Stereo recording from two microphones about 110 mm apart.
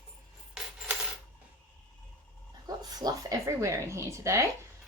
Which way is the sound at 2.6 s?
40° right (ahead or behind).